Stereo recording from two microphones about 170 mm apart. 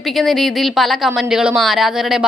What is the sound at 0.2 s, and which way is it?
A woman's voice, centre (ahead or behind).